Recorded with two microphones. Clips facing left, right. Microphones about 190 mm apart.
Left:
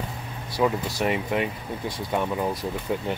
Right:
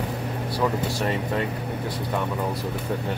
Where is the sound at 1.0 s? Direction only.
15° left (ahead or behind).